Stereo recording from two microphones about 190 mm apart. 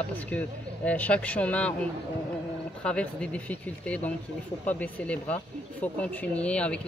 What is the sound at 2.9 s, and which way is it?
A man's voice, 5° left (ahead or behind).